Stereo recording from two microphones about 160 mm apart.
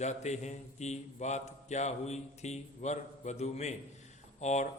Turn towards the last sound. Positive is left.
turn(degrees=45)  # may be behind; listen again after turning